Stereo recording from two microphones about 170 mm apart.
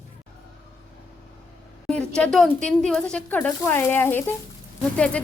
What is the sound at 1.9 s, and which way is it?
Speech, 5° left (ahead or behind).